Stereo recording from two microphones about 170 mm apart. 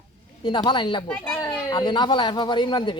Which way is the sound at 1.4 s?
20° left (ahead or behind).